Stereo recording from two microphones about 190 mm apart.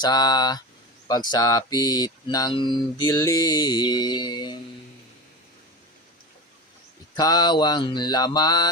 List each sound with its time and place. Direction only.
0.0 s speech: 20° left (ahead or behind)
7.2 s speech: 20° left (ahead or behind)